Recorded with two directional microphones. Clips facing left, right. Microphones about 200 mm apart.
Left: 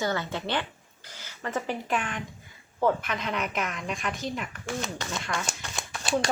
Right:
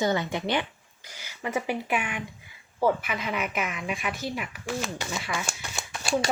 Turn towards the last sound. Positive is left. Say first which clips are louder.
# right 1 dB
turn(degrees=-5)  # may be behind; listen again after turning